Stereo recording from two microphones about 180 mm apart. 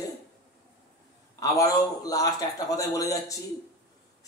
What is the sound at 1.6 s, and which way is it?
A man's voice, 20° left (ahead or behind).